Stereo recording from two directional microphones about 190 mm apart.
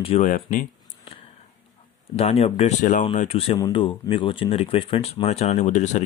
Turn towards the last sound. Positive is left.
turn(degrees=40)  # may be behind; listen again after turning